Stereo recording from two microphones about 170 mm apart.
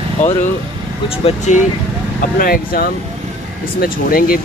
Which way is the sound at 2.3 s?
60° left (ahead or behind).